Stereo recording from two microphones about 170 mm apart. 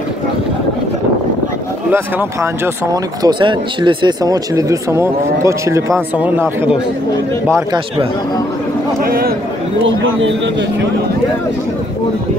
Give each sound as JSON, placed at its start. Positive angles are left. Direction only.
{"t": 1.9, "sound": "speech", "side_deg": -15}
{"t": 9.0, "sound": "a man's voice", "side_deg": -60}
{"t": 9.8, "sound": "a man's voice", "side_deg": -90}